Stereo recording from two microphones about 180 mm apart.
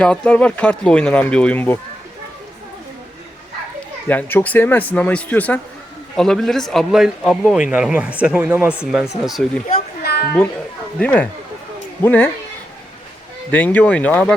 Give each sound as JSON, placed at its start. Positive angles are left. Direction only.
{"t": 0.0, "sound": "speech", "side_deg": 5}
{"t": 4.1, "sound": "speech", "side_deg": 10}
{"t": 10.0, "sound": "children playing", "side_deg": 60}
{"t": 11.0, "sound": "speech", "side_deg": 10}
{"t": 13.5, "sound": "speech", "side_deg": 10}